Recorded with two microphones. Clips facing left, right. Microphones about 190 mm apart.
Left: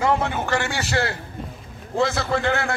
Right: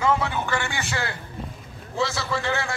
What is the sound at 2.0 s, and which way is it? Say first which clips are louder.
Speech: left 5 dB; 55° left (ahead or behind).